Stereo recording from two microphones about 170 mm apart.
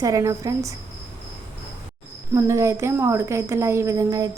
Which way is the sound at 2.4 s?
15° right (ahead or behind).